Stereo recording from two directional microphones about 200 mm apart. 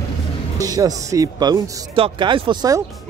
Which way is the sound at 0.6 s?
20° right (ahead or behind).